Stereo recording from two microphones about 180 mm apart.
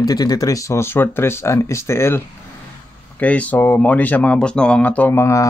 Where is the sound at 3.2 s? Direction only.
10° left (ahead or behind).